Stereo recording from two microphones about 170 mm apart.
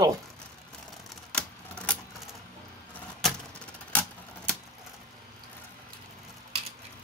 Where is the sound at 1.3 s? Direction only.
5° left (ahead or behind).